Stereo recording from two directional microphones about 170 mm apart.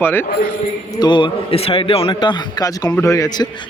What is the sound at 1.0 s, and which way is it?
Speech, 25° left (ahead or behind).